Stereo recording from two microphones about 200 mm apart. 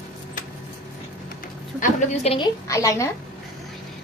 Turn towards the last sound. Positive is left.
turn(degrees=15)  # may be behind; listen again after turning